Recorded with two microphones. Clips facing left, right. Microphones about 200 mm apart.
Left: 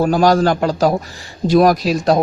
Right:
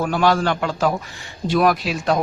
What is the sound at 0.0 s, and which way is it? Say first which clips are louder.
Speech: left 5 dB; 40° left (ahead or behind).